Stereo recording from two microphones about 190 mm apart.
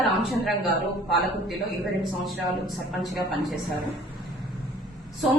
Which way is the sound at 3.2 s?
20° left (ahead or behind).